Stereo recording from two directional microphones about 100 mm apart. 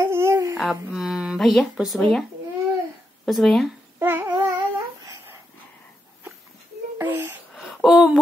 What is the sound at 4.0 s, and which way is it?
Babbling, 20° right (ahead or behind).